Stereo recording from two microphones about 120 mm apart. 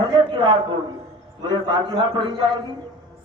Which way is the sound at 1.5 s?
40° right (ahead or behind).